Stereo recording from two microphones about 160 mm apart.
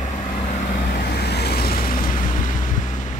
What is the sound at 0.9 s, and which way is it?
Vehicle, 75° left (ahead or behind).